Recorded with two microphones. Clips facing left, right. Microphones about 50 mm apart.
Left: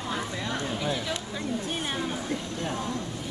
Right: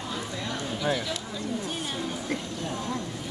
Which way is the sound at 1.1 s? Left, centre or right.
Left.